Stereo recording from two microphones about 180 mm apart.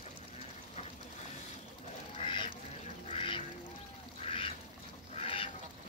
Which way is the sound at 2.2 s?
30° left (ahead or behind).